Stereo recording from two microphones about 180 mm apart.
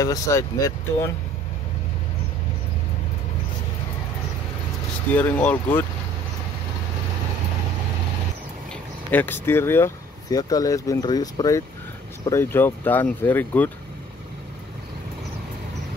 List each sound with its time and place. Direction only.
0.0 s speech: 20° left (ahead or behind)
5.1 s speech: 10° left (ahead or behind)
9.1 s speech: 10° left (ahead or behind)